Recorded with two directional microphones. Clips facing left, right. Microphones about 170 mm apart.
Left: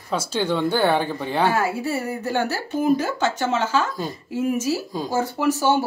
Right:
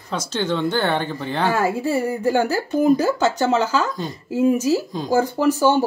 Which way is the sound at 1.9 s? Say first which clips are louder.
Right 5 dB; 15° right (ahead or behind).